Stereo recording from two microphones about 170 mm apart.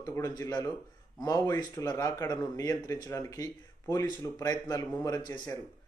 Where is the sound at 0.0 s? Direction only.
20° left (ahead or behind).